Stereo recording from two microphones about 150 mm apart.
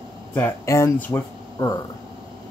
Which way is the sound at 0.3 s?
20° left (ahead or behind).